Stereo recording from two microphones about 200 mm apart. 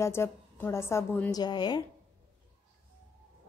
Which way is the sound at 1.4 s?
20° left (ahead or behind).